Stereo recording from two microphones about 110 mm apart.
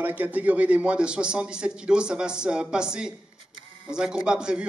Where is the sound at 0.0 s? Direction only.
15° right (ahead or behind).